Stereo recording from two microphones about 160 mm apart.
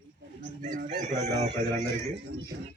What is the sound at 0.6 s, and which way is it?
Chicken, 50° right (ahead or behind).